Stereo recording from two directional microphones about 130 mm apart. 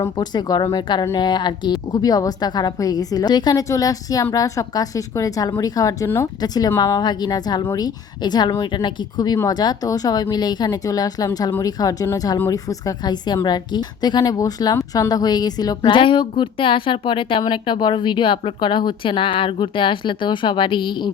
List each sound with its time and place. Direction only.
0.2 s a woman's voice: 30° left (ahead or behind)